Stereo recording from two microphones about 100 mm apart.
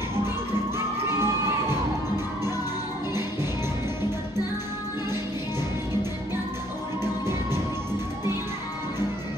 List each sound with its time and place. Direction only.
0.7 s children shouting: 25° right (ahead or behind)
7.0 s music: 25° right (ahead or behind)